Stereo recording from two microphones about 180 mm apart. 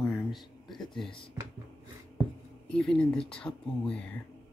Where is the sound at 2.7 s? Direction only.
5° left (ahead or behind).